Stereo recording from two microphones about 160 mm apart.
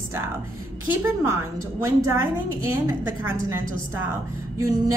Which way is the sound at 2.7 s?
15° right (ahead or behind).